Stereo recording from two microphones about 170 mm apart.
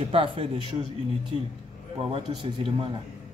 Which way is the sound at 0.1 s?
30° right (ahead or behind).